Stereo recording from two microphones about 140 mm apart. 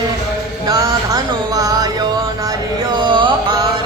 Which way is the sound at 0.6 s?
25° right (ahead or behind).